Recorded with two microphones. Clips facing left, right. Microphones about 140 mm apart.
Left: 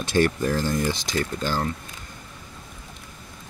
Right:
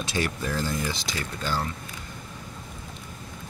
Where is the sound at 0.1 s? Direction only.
50° left (ahead or behind).